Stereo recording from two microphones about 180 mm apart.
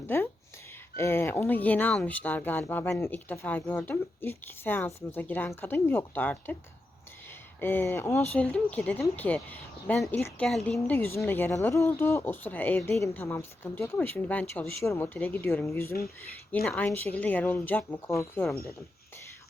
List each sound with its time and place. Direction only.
0.9 s speech: 15° left (ahead or behind)
7.6 s speech: 10° left (ahead or behind)